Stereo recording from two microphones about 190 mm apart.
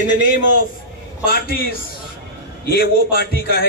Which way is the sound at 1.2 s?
50° left (ahead or behind).